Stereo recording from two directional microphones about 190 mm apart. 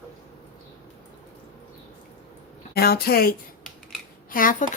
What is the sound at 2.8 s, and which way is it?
A woman's voice, 55° left (ahead or behind).